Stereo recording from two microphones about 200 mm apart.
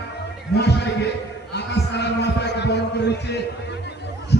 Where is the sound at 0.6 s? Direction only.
55° left (ahead or behind).